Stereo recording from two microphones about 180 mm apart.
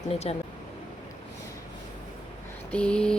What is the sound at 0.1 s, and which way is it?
Speech, 35° left (ahead or behind).